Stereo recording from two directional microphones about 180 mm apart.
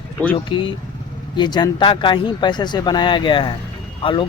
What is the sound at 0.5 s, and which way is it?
Speech, 30° left (ahead or behind).